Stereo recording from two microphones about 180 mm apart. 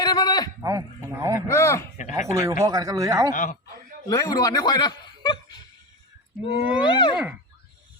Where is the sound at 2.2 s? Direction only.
15° right (ahead or behind).